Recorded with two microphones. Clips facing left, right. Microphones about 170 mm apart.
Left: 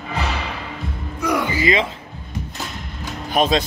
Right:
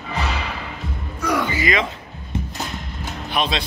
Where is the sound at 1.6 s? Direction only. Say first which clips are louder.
Left 2 dB; 25° left (ahead or behind).